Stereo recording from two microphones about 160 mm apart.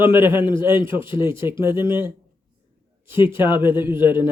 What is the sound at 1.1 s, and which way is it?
Speech, 15° right (ahead or behind).